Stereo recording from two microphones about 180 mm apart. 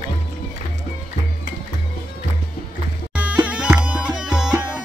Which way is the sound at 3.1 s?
5° right (ahead or behind).